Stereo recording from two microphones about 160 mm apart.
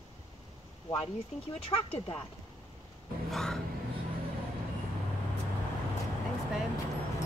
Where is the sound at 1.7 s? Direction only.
35° left (ahead or behind).